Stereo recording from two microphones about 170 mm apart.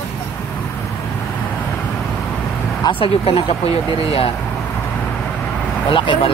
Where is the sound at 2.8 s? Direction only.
30° left (ahead or behind).